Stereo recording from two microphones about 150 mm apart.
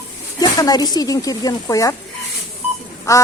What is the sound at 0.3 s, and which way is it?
Speech, 25° left (ahead or behind).